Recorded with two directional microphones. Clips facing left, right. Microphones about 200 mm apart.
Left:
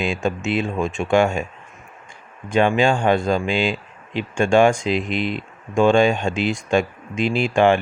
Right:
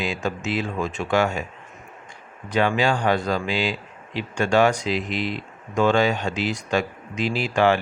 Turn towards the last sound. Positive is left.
turn(degrees=25)  # may be behind; listen again after turning